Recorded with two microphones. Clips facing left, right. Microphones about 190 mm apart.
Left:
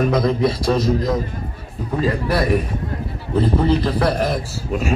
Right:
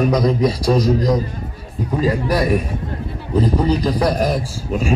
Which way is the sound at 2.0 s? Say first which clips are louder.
Right 1 dB; 15° right (ahead or behind).